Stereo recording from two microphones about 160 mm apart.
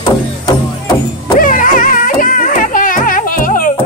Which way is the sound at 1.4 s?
55° left (ahead or behind).